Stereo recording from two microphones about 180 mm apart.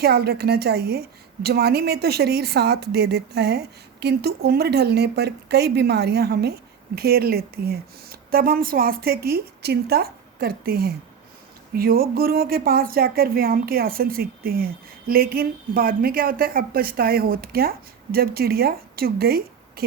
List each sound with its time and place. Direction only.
0.0 s speech: 60° right (ahead or behind)